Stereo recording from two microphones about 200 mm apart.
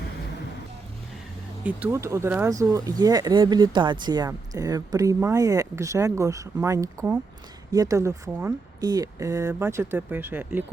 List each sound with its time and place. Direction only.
1.6 s speech: 10° right (ahead or behind)